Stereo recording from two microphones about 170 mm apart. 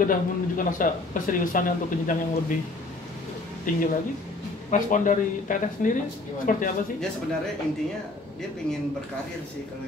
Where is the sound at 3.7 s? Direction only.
50° left (ahead or behind).